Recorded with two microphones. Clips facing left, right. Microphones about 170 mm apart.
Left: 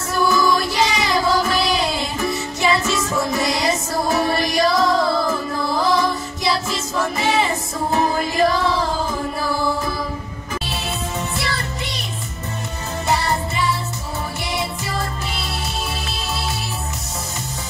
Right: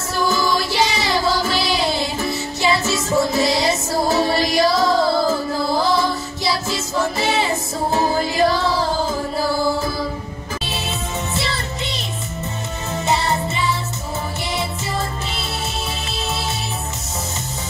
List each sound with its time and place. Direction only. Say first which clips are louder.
0.1 s music: left 2 dB; 30° right (ahead or behind)
11.3 s music: right 1 dB; 25° right (ahead or behind)